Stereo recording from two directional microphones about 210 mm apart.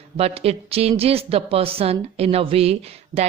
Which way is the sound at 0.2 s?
30° right (ahead or behind).